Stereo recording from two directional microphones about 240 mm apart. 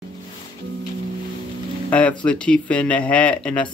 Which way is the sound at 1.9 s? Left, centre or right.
Centre.